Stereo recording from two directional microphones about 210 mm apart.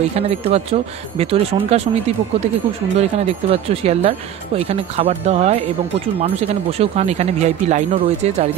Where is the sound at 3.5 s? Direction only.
30° right (ahead or behind).